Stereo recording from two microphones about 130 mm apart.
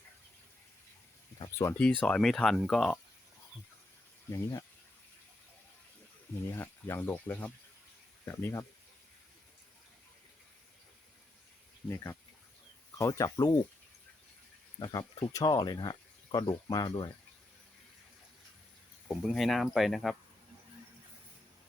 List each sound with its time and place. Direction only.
1.8 s speech: 10° left (ahead or behind)
4.3 s speech: 25° left (ahead or behind)
6.5 s speech: 20° left (ahead or behind)
11.9 s speech: 25° left (ahead or behind)
14.8 s speech: 30° left (ahead or behind)
19.0 s speech: 5° left (ahead or behind)